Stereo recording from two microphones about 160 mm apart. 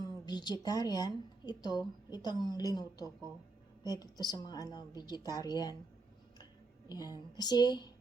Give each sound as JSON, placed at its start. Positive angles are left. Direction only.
{"t": 0.0, "sound": "a woman's voice", "side_deg": 25}
{"t": 6.4, "sound": "a sound", "side_deg": 25}
{"t": 7.3, "sound": "speech", "side_deg": 25}